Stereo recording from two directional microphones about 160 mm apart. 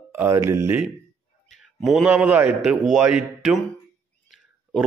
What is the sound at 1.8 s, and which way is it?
A man's voice, centre (ahead or behind).